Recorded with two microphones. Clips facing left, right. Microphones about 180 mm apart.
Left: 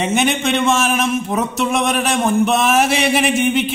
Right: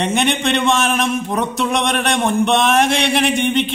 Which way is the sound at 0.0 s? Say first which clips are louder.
Even; centre (ahead or behind).